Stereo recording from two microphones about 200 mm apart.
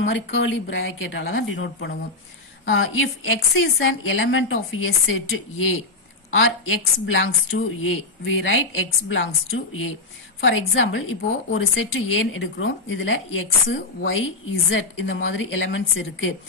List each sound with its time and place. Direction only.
0.0 s a woman's voice: 65° left (ahead or behind)
2.6 s a woman's voice: 90° left; by 16.3 s 70° left (ahead or behind)